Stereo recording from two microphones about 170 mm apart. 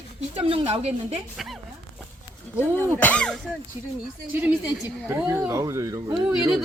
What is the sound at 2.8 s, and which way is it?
Speech, 10° left (ahead or behind).